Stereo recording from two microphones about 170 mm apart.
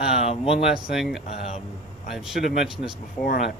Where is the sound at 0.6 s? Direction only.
5° right (ahead or behind).